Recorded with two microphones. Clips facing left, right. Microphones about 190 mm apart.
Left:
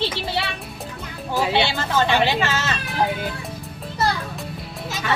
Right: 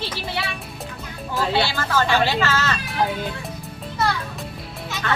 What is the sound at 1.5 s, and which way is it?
Speech, 20° left (ahead or behind).